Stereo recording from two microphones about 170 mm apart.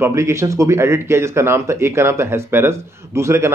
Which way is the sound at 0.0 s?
15° right (ahead or behind).